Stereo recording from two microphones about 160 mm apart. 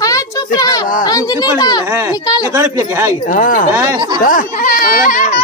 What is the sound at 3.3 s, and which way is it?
A man's voice, 55° left (ahead or behind).